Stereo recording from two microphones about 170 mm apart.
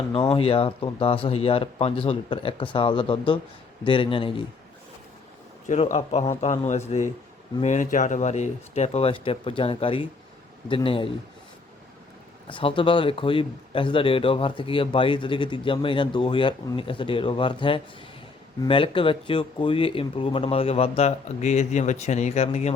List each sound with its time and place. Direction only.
0.3 s speech: 35° left (ahead or behind)
5.8 s speech: 40° left (ahead or behind)
12.5 s speech: 30° left (ahead or behind)